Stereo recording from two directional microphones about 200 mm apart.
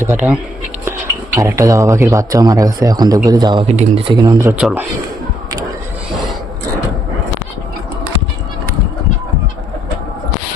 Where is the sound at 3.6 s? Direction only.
35° right (ahead or behind).